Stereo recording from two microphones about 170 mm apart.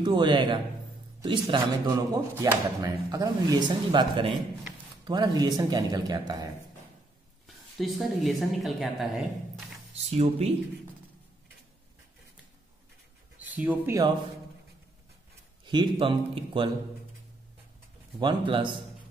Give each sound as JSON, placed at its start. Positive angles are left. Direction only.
{"t": 0.0, "sound": "speech", "side_deg": -30}
{"t": 1.9, "sound": "speech", "side_deg": -15}
{"t": 7.4, "sound": "a woman's voice", "side_deg": 0}
{"t": 9.9, "sound": "speech", "side_deg": -35}
{"t": 13.4, "sound": "speech", "side_deg": -10}
{"t": 15.6, "sound": "speech", "side_deg": -25}
{"t": 18.2, "sound": "speech", "side_deg": -30}